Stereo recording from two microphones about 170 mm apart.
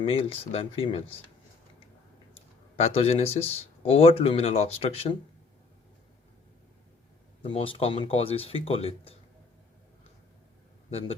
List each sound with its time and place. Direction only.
0.0 s speech: 35° left (ahead or behind)
2.7 s speech: 35° left (ahead or behind)
7.4 s speech: 30° left (ahead or behind)